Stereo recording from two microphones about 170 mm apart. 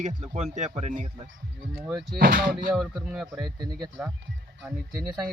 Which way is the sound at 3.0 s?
5° right (ahead or behind).